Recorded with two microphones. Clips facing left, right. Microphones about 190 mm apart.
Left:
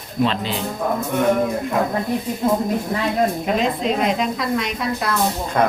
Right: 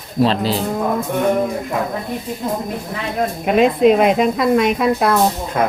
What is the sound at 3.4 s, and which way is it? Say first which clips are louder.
A woman's voice: right 8 dB; 60° right (ahead or behind).